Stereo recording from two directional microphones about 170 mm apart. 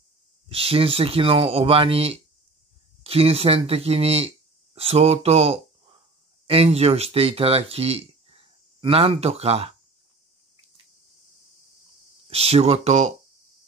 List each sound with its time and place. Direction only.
0.5 s speech: 35° right (ahead or behind)
12.3 s speech: 35° right (ahead or behind)